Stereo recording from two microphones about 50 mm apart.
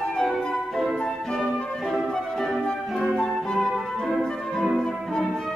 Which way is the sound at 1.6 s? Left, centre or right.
Centre.